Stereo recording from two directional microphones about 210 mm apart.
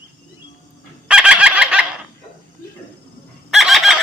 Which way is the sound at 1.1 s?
5° right (ahead or behind).